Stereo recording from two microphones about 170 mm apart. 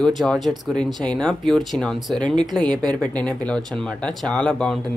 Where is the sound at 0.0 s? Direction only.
Centre (ahead or behind).